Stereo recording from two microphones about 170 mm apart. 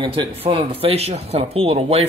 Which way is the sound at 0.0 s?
30° right (ahead or behind).